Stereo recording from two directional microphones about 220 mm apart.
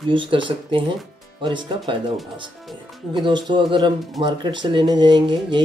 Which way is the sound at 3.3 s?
20° right (ahead or behind).